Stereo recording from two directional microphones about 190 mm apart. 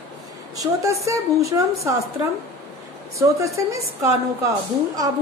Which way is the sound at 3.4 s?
15° right (ahead or behind).